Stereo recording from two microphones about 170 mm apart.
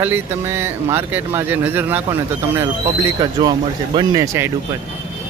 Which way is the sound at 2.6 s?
20° right (ahead or behind).